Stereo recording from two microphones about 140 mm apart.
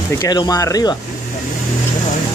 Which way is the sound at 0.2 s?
30° left (ahead or behind).